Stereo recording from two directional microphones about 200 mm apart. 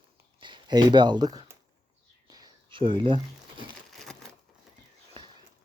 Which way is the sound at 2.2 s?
20° right (ahead or behind).